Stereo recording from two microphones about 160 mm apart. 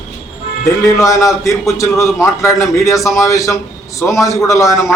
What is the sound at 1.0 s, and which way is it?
A man's voice, 20° left (ahead or behind).